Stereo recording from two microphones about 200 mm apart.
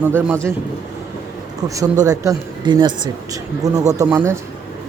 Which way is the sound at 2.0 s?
20° right (ahead or behind).